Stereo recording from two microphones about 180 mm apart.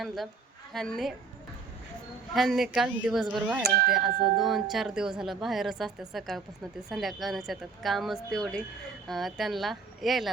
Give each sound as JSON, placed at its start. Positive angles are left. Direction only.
{"t": 0.7, "sound": "speech", "side_deg": 0}
{"t": 2.3, "sound": "speech", "side_deg": 0}
{"t": 3.6, "sound": "speech", "side_deg": -60}
{"t": 3.9, "sound": "speech", "side_deg": 0}